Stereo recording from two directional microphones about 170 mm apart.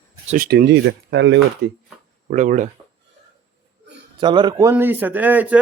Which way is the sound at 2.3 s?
50° right (ahead or behind).